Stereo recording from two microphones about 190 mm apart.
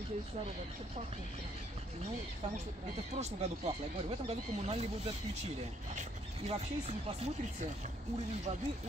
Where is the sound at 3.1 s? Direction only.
35° right (ahead or behind).